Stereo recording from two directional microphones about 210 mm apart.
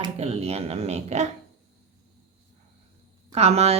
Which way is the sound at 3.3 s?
30° right (ahead or behind).